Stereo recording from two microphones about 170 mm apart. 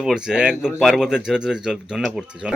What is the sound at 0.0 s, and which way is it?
Speech, 5° right (ahead or behind).